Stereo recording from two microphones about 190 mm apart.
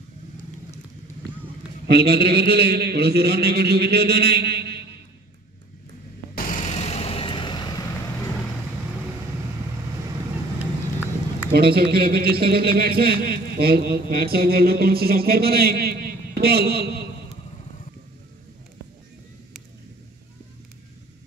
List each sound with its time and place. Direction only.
1.9 s speech: 60° right (ahead or behind)
6.3 s vehicle: 45° left (ahead or behind); by 7.8 s 25° left (ahead or behind)
10.6 s vehicle: 10° right (ahead or behind)
11.5 s speech: 55° right (ahead or behind)